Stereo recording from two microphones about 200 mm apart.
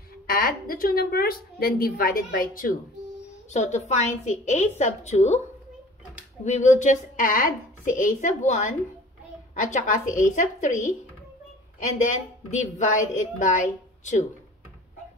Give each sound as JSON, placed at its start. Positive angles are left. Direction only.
{"t": 0.3, "sound": "a woman's voice", "side_deg": 45}
{"t": 6.4, "sound": "a woman's voice", "side_deg": 35}